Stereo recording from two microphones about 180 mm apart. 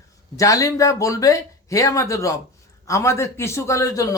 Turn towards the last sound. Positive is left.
turn(degrees=20)  # may be behind; listen again after turning